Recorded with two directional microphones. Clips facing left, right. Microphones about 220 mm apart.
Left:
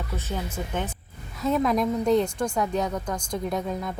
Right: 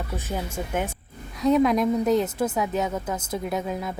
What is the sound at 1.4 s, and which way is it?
A woman's voice, centre (ahead or behind).